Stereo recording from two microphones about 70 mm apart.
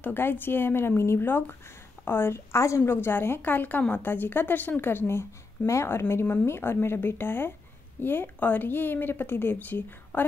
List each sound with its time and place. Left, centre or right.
0.0 s a woman's voice: left
2.8 s a woman's voice: left